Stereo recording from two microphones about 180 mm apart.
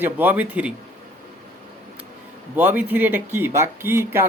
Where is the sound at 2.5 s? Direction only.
10° right (ahead or behind).